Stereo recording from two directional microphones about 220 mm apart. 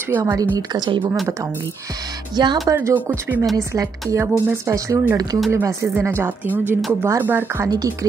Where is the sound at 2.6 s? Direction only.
10° right (ahead or behind).